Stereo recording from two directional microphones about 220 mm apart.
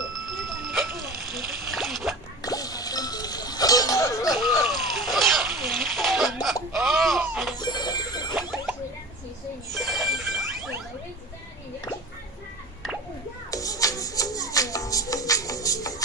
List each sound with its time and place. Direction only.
0.4 s music: centre (ahead or behind)
1.7 s splash: centre (ahead or behind)
2.4 s music: 15° left (ahead or behind)
4.6 s chicken: centre (ahead or behind)
6.8 s a sound: centre (ahead or behind)
7.5 s music: 20° left (ahead or behind)
8.3 s a sound: centre (ahead or behind)
9.8 s a sound: centre (ahead or behind)
13.5 s music: 15° left (ahead or behind)